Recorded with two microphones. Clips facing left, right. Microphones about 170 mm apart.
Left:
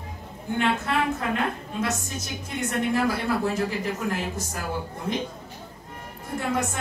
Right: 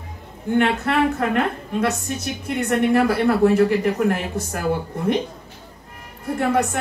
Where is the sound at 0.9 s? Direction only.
65° right (ahead or behind).